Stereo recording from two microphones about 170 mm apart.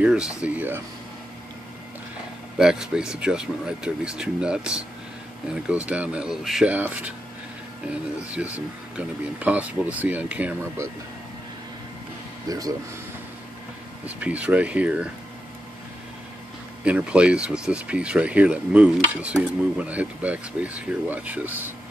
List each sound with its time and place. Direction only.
0.0 s speech: 5° right (ahead or behind)
2.5 s speech: 5° right (ahead or behind)
12.4 s speech: 20° right (ahead or behind)
14.0 s speech: 10° right (ahead or behind)
16.8 s speech: 5° right (ahead or behind)